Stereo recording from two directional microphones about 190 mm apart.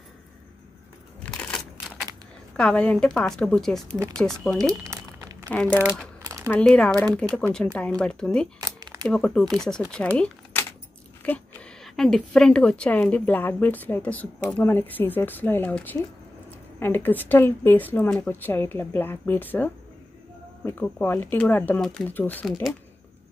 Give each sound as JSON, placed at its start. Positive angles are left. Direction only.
{"t": 1.2, "sound": "a sound", "side_deg": 5}
{"t": 2.5, "sound": "a woman's voice", "side_deg": 5}
{"t": 4.6, "sound": "crumpling", "side_deg": -15}
{"t": 5.5, "sound": "a woman's voice", "side_deg": 5}
{"t": 8.5, "sound": "a sound", "side_deg": -20}
{"t": 9.0, "sound": "a woman's voice", "side_deg": 5}
{"t": 22.5, "sound": "a woman's voice", "side_deg": 0}